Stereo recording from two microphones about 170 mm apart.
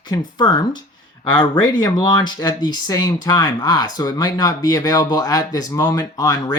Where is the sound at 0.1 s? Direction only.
25° left (ahead or behind).